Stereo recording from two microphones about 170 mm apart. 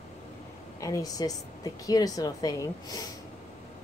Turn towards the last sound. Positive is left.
turn(degrees=20)  # may be behind; listen again after turning